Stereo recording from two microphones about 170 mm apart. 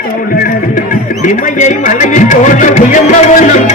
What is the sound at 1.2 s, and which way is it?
Speech, 50° left (ahead or behind).